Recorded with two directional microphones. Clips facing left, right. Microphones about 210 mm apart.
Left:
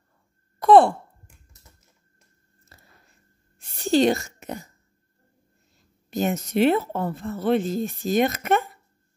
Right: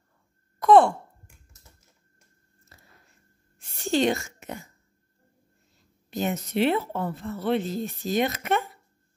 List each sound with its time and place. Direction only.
0.6 s sigh: 35° left (ahead or behind)
2.7 s biting: 35° left (ahead or behind)
3.5 s a sound: 35° left (ahead or behind)
6.0 s a woman's voice: 45° left (ahead or behind)